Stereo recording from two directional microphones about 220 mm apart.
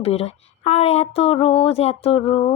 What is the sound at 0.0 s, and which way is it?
Speech, 30° left (ahead or behind).